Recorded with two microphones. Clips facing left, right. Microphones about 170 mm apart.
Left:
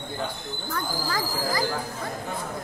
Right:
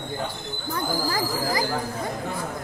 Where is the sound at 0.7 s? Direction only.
20° right (ahead or behind).